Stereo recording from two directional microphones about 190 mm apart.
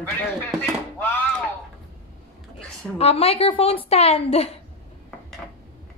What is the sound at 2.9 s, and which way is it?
A woman's voice, 30° left (ahead or behind).